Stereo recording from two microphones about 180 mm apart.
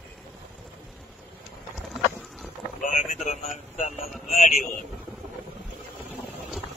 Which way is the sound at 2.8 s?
45° left (ahead or behind).